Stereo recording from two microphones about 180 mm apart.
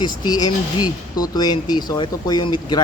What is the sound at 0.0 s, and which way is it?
Speech, 20° left (ahead or behind).